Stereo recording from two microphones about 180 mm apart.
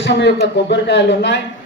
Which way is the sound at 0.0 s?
80° left.